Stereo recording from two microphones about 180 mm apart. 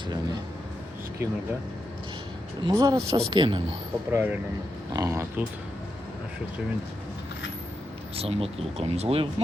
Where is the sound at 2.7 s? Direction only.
20° right (ahead or behind).